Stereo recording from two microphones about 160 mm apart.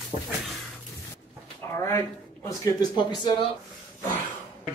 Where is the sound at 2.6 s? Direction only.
25° left (ahead or behind).